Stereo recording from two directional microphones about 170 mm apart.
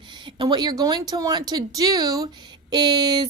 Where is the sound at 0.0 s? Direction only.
25° right (ahead or behind).